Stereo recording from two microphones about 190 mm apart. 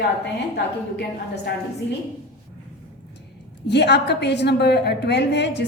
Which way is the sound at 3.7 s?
60° left (ahead or behind).